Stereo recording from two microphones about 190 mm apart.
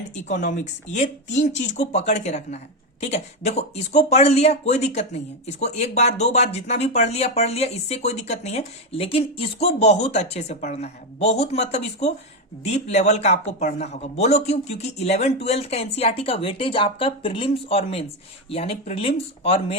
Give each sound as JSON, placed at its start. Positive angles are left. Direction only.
{"t": 0.3, "sound": "speech", "side_deg": 40}